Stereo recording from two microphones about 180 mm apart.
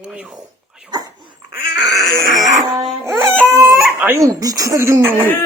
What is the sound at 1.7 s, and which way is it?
Speech, centre (ahead or behind).